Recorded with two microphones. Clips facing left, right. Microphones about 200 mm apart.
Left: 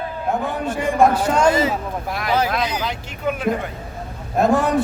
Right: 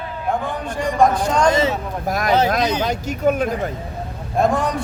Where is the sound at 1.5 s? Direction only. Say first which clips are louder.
Right 1 dB; 25° right (ahead or behind).